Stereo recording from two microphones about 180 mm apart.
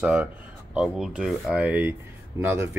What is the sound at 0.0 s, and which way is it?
Speech, 5° right (ahead or behind).